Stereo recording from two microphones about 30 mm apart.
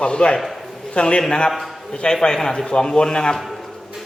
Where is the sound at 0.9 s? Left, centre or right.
Left.